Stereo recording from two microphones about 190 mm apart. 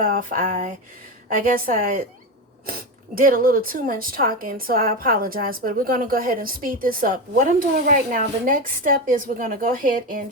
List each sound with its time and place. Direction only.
0.0 s a woman's voice: 45° right (ahead or behind)
3.2 s a woman's voice: 50° right (ahead or behind)